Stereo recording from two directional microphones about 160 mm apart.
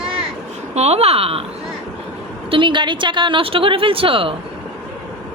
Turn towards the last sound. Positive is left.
turn(degrees=-35)  # may be behind; listen again after turning